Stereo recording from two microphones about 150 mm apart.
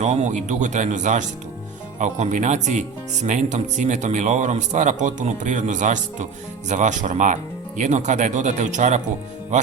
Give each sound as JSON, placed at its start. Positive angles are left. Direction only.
{"t": 0.0, "sound": "speech", "side_deg": -50}